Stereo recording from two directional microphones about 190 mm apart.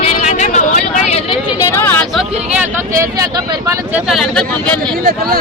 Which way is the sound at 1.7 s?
10° left (ahead or behind).